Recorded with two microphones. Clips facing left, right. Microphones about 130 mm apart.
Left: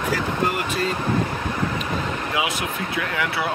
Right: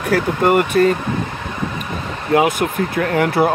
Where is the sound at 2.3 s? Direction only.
50° right (ahead or behind).